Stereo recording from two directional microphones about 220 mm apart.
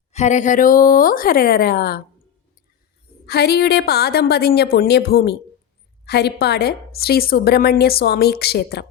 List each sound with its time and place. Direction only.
0.1 s a woman's voice: 30° left (ahead or behind)
3.2 s a woman's voice: 45° left (ahead or behind)